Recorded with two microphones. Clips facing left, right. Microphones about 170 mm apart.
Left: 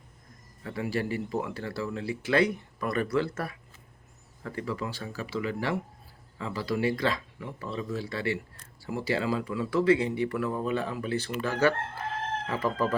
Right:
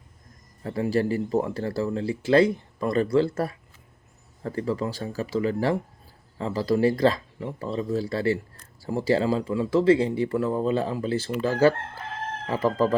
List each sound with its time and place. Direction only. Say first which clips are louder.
0.6 s speech: right 7 dB; 35° right (ahead or behind)